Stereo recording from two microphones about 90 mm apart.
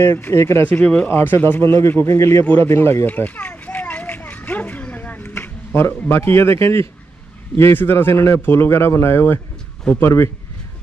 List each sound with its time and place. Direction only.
0.0 s speech: 25° left (ahead or behind)
0.7 s speech: 15° left (ahead or behind); by 2.4 s 30° left (ahead or behind)
2.6 s children playing: 25° left (ahead or behind)
7.5 s speech: 25° left (ahead or behind)